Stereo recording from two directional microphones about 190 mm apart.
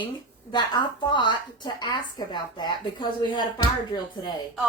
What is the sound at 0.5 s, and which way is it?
Speech, 25° left (ahead or behind).